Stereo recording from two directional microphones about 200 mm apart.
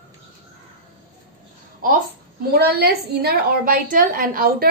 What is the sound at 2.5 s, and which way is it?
A woman's voice, 50° right (ahead or behind).